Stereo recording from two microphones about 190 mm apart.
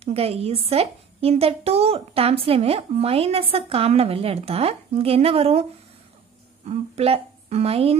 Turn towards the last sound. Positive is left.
turn(degrees=-30)  # may be behind; listen again after turning